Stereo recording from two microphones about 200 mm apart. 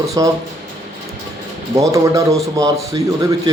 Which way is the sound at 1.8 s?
15° right (ahead or behind).